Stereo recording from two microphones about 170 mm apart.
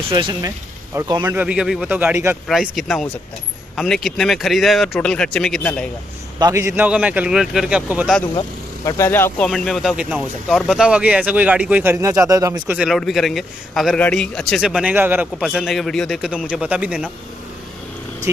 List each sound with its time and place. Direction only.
0.1 s speech: 25° right (ahead or behind)
1.3 s speech: 10° right (ahead or behind)
2.4 s a man's voice: centre (ahead or behind)
6.4 s a man's voice: 15° right (ahead or behind)
8.4 s speech: 20° left (ahead or behind)
9.5 s speech: centre (ahead or behind); by 12.7 s 20° right (ahead or behind)
12.7 s a man's voice: centre (ahead or behind)